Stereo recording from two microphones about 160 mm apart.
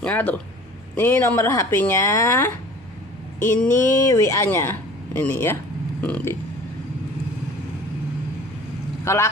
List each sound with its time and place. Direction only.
0.0 s speech: 10° left (ahead or behind)
9.0 s speech: 15° left (ahead or behind)